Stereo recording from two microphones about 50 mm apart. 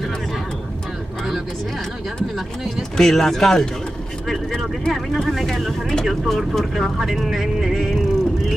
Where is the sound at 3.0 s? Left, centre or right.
Centre.